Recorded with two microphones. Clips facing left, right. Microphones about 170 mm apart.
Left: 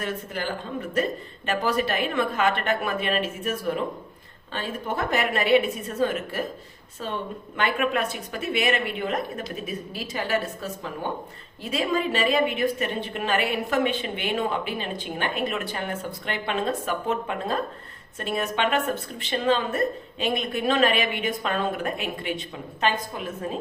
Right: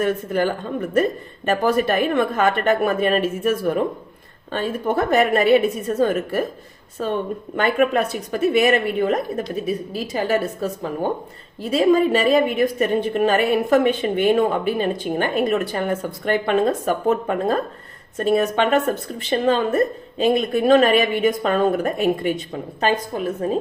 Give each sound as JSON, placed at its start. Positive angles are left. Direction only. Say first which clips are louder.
{"t": 0.0, "sound": "a woman's voice", "louder": "right 10 dB", "side_deg": -50}